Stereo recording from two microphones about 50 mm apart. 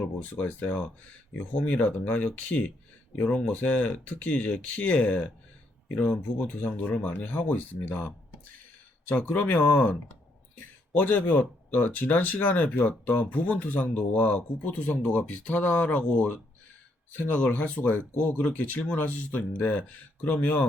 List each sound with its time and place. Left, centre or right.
0.0 s speech: left